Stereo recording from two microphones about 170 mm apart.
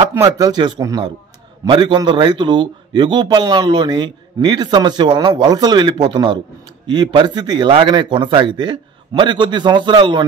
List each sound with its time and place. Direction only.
0.1 s a man's voice: 15° right (ahead or behind)